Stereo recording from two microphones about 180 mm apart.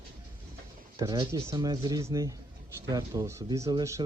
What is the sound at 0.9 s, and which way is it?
Speech, 20° right (ahead or behind).